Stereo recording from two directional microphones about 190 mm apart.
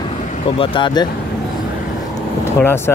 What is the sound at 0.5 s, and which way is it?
Speech, 25° left (ahead or behind).